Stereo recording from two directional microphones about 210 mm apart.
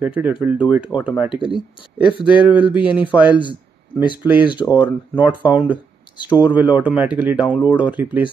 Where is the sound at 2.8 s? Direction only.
20° left (ahead or behind).